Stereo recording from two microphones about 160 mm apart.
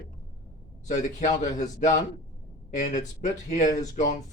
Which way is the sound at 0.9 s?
50° left (ahead or behind).